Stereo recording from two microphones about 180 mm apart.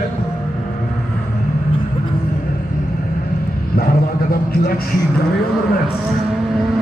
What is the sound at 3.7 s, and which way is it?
A man's voice, 55° left (ahead or behind).